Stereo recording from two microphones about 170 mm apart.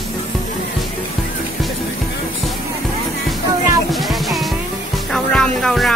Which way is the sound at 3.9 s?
Centre (ahead or behind).